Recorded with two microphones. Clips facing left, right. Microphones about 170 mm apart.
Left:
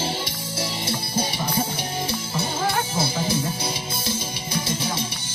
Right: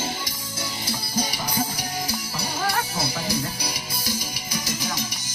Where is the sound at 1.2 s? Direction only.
25° left (ahead or behind).